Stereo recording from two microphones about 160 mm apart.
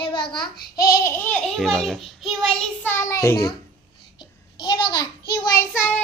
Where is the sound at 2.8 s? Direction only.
15° left (ahead or behind).